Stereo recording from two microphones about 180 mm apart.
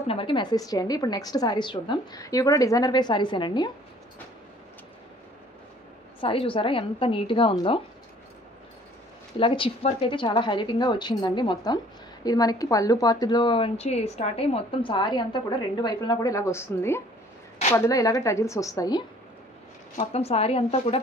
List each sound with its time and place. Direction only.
0.0 s a woman's voice: 30° left (ahead or behind)
6.2 s a woman's voice: 30° left (ahead or behind)
9.4 s a woman's voice: 30° left (ahead or behind)
20.0 s speech: 35° left (ahead or behind)